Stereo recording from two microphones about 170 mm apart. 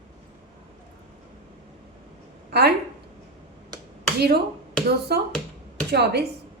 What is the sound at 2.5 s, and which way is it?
Speech, 70° right (ahead or behind).